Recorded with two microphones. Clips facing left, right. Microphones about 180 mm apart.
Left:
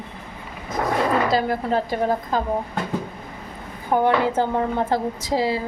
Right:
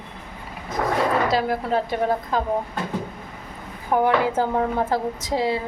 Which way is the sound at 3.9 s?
25° left (ahead or behind).